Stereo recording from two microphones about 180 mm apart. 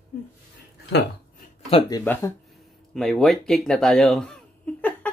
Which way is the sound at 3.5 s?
5° left (ahead or behind).